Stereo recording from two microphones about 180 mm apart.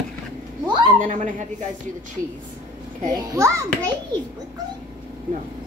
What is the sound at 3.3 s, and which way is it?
Speech, 20° right (ahead or behind).